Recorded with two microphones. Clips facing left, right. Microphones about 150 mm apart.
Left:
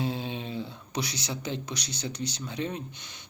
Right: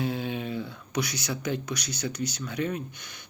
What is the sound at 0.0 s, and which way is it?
Speech, 25° left (ahead or behind).